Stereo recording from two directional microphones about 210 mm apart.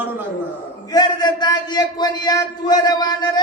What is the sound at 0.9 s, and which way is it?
A man's voice, 20° left (ahead or behind).